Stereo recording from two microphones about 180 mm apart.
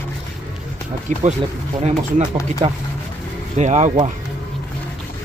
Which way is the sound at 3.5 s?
40° right (ahead or behind).